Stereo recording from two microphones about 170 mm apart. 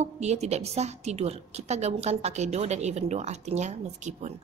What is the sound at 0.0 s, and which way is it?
A woman's voice, 40° right (ahead or behind).